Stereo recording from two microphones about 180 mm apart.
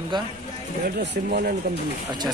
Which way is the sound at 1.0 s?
65° right (ahead or behind).